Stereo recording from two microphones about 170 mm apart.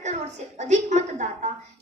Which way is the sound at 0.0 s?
45° right (ahead or behind).